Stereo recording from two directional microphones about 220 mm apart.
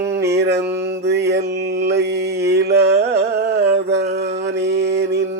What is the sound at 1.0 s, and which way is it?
Music, 50° right (ahead or behind).